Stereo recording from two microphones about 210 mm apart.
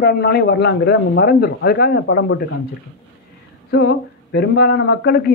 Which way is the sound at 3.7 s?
50° left (ahead or behind).